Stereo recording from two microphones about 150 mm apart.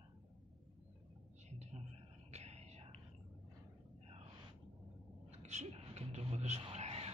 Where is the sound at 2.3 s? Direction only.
45° right (ahead or behind).